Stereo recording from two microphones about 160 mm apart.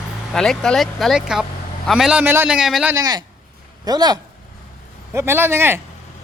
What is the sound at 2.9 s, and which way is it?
A man's voice, 25° right (ahead or behind).